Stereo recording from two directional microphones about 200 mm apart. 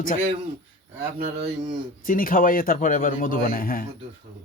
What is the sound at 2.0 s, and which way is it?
A man's voice, 45° left (ahead or behind).